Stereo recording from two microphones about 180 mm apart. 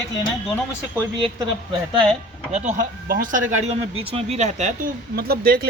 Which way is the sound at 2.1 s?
40° right (ahead or behind).